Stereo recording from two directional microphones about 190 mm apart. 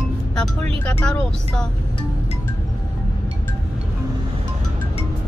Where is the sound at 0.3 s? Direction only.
5° left (ahead or behind).